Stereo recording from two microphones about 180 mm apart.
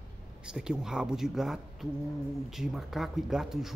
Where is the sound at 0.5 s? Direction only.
5° right (ahead or behind).